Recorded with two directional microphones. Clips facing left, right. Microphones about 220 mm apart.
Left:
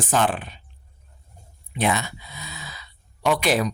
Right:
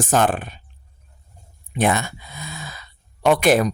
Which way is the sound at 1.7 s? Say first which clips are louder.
Right 3 dB; 50° right (ahead or behind).